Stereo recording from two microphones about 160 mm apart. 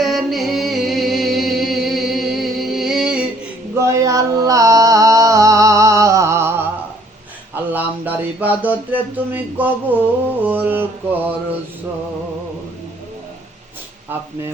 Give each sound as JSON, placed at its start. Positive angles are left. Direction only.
{"t": 0.0, "sound": "music", "side_deg": 0}
{"t": 3.8, "sound": "a sound", "side_deg": -20}
{"t": 10.4, "sound": "mantra", "side_deg": -10}